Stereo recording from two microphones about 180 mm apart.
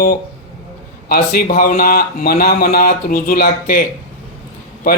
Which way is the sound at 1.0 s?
55° left (ahead or behind).